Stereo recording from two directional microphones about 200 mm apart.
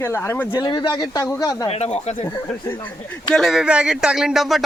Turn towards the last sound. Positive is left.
turn(degrees=0)  # may be behind; listen again after turning